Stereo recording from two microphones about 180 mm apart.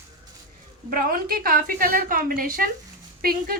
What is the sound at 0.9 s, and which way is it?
A woman's voice, 50° right (ahead or behind).